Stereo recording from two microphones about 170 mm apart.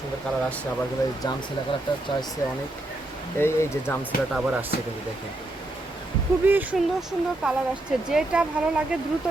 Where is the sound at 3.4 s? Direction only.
15° left (ahead or behind).